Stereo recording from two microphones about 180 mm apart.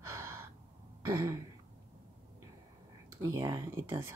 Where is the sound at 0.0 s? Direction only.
15° right (ahead or behind).